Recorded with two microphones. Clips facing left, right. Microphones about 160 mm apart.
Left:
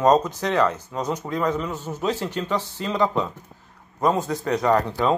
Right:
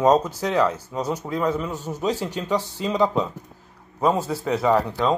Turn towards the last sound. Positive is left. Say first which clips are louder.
# even
turn(degrees=-5)  # may be behind; listen again after turning